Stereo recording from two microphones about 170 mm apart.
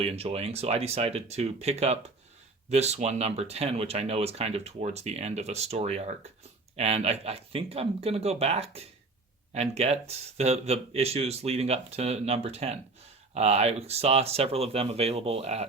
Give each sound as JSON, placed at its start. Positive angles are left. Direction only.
{"t": 0.0, "sound": "speech", "side_deg": -35}